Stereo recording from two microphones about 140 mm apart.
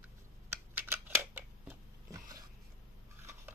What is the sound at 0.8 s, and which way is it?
Scissors, 15° right (ahead or behind).